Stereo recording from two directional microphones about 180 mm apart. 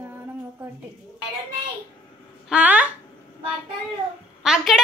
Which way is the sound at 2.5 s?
10° right (ahead or behind).